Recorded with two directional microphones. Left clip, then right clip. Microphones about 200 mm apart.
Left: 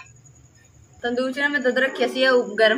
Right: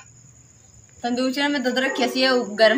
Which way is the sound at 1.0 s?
5° right (ahead or behind).